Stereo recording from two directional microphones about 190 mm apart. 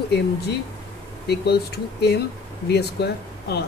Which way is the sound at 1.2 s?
60° left (ahead or behind).